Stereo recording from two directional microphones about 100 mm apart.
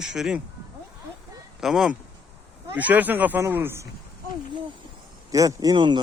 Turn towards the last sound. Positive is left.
turn(degrees=-50)  # may be behind; listen again after turning